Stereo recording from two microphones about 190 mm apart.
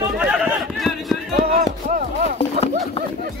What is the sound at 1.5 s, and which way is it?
Speech, 45° right (ahead or behind).